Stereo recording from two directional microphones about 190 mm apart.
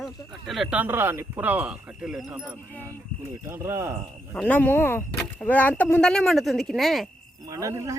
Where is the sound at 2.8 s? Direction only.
15° right (ahead or behind).